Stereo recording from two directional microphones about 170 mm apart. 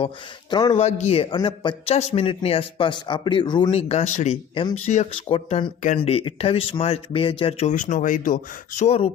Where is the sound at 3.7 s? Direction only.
40° left (ahead or behind).